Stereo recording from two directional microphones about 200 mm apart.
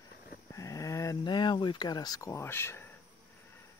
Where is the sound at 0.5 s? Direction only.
15° left (ahead or behind).